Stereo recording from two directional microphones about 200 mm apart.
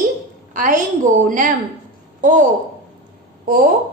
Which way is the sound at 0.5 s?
40° right (ahead or behind).